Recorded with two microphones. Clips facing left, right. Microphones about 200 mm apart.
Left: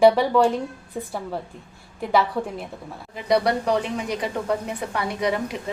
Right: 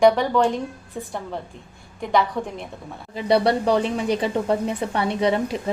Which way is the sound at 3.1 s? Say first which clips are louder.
Right 2 dB; 30° right (ahead or behind).